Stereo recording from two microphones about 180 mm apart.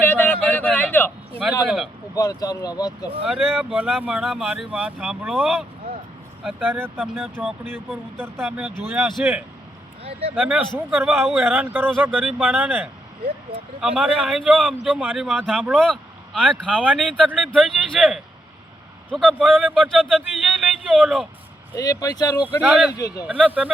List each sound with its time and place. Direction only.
0.0 s a sound: 10° left (ahead or behind)
1.6 s speech: centre (ahead or behind)
2.1 s speech: 20° left (ahead or behind)
3.2 s speech: 5° right (ahead or behind)
6.4 s speech: 10° right (ahead or behind)
7.2 s speech: centre (ahead or behind)
10.0 s speech: 30° right (ahead or behind)
10.3 s speech: 5° right (ahead or behind)
15.9 s vehicle: 5° right (ahead or behind)
16.6 s speech: 5° right (ahead or behind)
21.8 s speech: 20° left (ahead or behind)
22.6 s speech: 5° right (ahead or behind)
22.9 s speech: 20° left (ahead or behind)
23.2 s speech: 10° right (ahead or behind)